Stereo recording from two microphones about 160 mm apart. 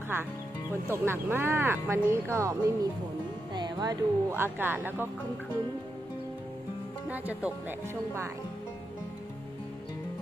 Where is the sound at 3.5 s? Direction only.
25° right (ahead or behind).